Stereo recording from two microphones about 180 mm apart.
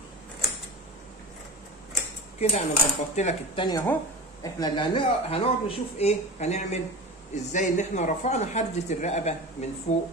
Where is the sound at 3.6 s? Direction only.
20° left (ahead or behind); by 10.0 s 40° left (ahead or behind).